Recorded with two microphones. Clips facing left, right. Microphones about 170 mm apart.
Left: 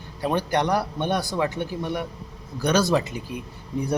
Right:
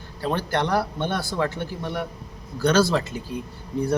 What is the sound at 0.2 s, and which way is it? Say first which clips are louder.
Speech: left 1 dB; 15° left (ahead or behind).